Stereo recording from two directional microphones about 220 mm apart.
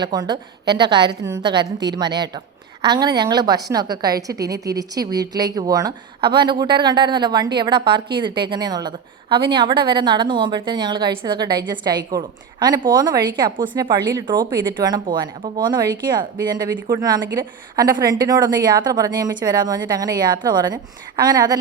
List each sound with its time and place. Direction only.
0.0 s a woman's voice: 20° right (ahead or behind)